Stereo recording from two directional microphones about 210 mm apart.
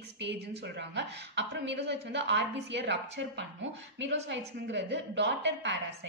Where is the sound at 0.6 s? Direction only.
55° right (ahead or behind).